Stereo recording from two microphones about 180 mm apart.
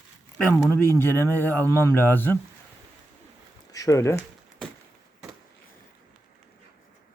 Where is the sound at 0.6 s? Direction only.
15° left (ahead or behind).